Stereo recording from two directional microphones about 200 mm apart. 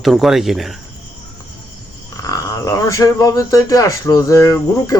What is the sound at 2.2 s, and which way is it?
Speech, 15° left (ahead or behind).